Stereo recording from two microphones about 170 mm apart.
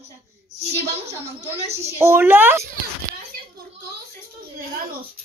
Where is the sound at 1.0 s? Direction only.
40° right (ahead or behind).